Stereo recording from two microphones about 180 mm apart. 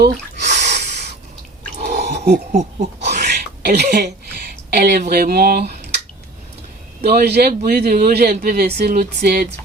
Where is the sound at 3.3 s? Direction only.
65° right (ahead or behind).